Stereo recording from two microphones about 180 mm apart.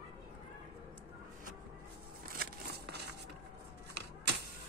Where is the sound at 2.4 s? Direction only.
60° right (ahead or behind).